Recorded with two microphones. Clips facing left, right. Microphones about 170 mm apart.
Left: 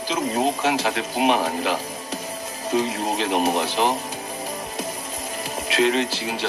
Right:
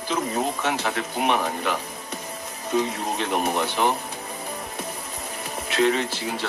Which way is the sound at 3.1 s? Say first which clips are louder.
Left 4 dB; 30° left (ahead or behind).